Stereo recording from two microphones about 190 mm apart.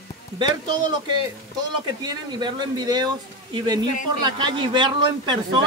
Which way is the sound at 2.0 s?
25° right (ahead or behind).